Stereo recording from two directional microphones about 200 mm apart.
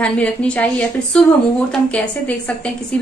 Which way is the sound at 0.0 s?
5° left (ahead or behind).